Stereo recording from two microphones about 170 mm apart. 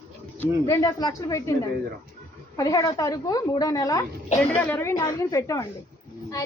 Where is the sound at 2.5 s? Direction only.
20° left (ahead or behind).